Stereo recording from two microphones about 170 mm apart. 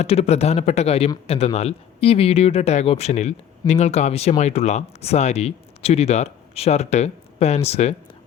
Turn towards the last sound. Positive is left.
turn(degrees=40)  # may be behind; listen again after turning